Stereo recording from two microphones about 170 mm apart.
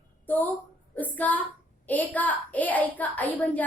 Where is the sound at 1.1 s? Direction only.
10° left (ahead or behind).